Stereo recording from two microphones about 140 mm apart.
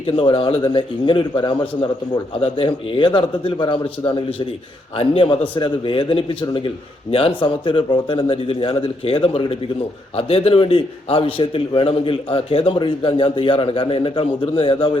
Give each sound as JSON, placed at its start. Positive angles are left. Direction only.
{"t": 0.0, "sound": "a man's voice", "side_deg": 40}